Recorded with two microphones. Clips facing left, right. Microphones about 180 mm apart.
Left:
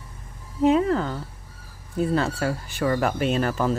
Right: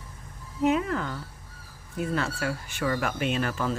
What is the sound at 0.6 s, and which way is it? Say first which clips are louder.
Speech: left 5 dB; 30° left (ahead or behind).